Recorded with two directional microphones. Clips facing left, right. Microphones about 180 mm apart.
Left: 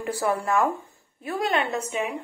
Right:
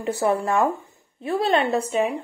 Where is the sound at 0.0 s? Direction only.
25° right (ahead or behind).